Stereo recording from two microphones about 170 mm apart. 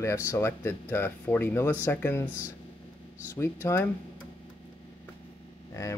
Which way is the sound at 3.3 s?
15° left (ahead or behind).